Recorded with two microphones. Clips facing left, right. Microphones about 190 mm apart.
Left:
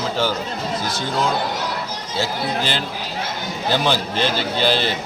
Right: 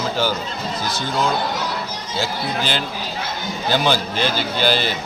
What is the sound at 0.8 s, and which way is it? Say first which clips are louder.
Speech: even; 25° left (ahead or behind).